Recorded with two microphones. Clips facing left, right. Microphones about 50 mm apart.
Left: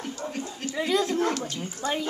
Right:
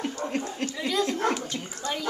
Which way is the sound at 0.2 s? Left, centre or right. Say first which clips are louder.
Right 4 dB; right.